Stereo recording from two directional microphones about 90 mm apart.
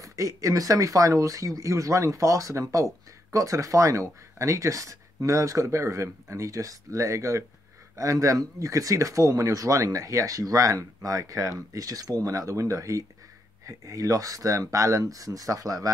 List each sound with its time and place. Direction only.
0.0 s speech: 35° right (ahead or behind)